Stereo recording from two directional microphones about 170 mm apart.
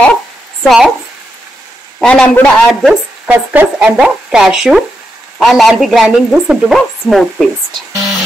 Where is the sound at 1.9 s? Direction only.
5° left (ahead or behind).